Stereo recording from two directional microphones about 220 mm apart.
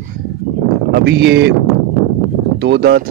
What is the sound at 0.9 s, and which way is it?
Speech, 50° right (ahead or behind).